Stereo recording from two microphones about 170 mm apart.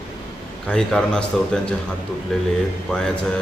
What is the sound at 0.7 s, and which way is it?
Speech, 5° left (ahead or behind).